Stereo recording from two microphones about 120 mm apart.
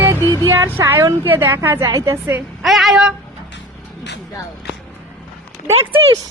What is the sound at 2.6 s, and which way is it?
Female singing, centre (ahead or behind).